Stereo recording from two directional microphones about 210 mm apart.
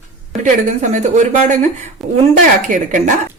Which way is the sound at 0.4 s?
35° right (ahead or behind).